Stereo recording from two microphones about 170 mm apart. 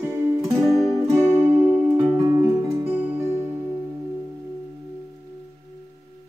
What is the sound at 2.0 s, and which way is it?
Music, 25° right (ahead or behind).